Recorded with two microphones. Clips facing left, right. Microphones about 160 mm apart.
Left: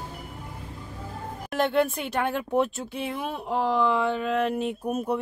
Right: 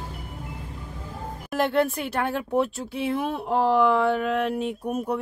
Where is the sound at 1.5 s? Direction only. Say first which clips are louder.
Right 1 dB; 5° right (ahead or behind).